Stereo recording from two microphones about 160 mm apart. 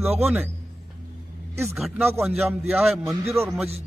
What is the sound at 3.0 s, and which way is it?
Speech, 15° right (ahead or behind).